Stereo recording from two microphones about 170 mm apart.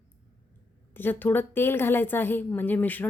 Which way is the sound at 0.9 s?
10° left (ahead or behind).